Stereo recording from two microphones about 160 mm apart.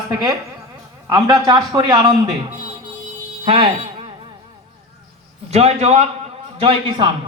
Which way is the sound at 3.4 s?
30° right (ahead or behind).